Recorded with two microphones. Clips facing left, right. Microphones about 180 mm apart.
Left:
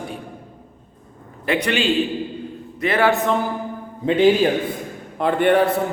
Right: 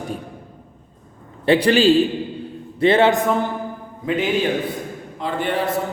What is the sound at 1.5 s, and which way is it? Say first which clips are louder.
A man's voice: right 6 dB; 30° right (ahead or behind).